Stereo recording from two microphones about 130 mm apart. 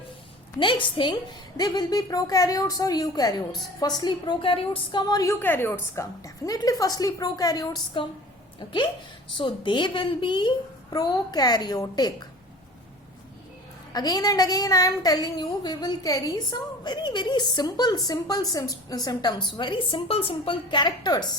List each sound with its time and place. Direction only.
0.6 s a woman's voice: 40° left (ahead or behind)
13.9 s a woman's voice: 30° left (ahead or behind)